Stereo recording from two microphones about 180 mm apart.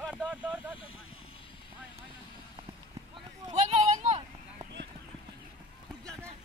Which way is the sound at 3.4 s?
35° right (ahead or behind).